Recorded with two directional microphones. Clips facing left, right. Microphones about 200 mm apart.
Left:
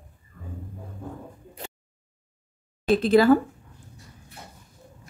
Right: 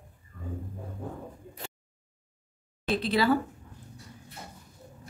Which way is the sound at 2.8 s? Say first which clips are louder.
Left 8 dB; 45° left (ahead or behind).